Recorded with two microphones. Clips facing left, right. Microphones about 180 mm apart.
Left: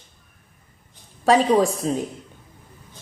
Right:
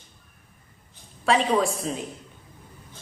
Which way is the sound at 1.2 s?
40° left (ahead or behind).